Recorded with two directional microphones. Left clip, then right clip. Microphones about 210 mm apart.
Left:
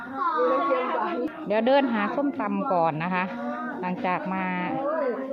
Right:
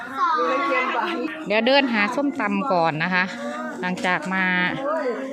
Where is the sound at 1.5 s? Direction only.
10° right (ahead or behind).